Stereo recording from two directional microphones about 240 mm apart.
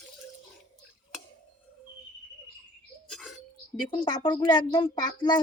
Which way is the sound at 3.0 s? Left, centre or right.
Centre.